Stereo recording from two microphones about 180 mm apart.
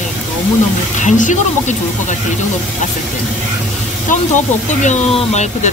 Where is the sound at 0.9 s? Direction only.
45° left (ahead or behind).